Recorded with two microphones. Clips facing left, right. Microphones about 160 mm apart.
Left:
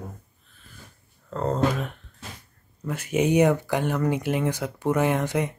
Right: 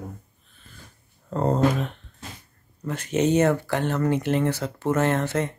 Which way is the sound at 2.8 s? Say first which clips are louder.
Right 1 dB; 10° left (ahead or behind).